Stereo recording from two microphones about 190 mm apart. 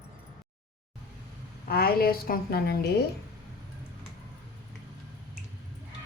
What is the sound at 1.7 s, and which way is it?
A woman's voice, 55° left (ahead or behind).